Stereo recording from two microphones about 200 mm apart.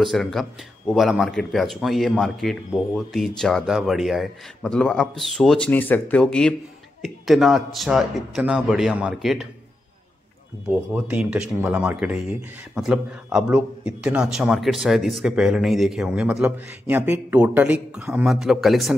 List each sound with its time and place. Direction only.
0.0 s speech: centre (ahead or behind)
10.7 s speech: 5° right (ahead or behind)